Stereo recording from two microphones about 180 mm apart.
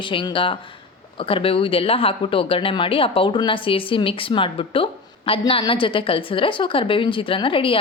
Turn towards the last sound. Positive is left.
turn(degrees=30)  # may be behind; listen again after turning